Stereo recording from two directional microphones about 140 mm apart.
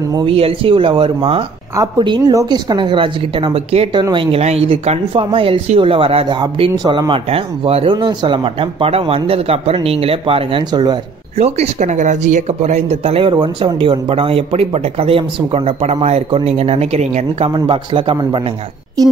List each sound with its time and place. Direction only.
0.1 s speech: 40° right (ahead or behind)
6.7 s speech: 25° right (ahead or behind)
11.3 s speech: 50° right (ahead or behind)
17.5 s speech: 40° right (ahead or behind)